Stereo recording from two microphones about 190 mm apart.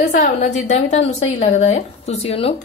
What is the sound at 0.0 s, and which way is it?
A woman's voice, 45° left (ahead or behind).